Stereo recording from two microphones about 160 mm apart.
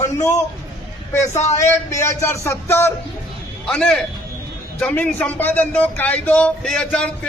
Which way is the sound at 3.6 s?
5° left (ahead or behind).